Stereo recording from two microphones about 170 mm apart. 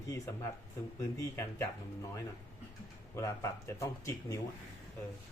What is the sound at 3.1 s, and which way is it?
Speech, 15° left (ahead or behind).